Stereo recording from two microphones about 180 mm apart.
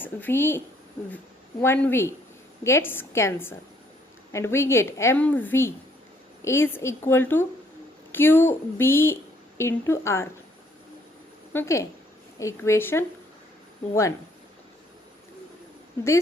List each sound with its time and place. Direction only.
0.0 s a woman's voice: 10° left (ahead or behind)
1.6 s a woman's voice: 15° left (ahead or behind)
11.5 s a woman's voice: 15° left (ahead or behind)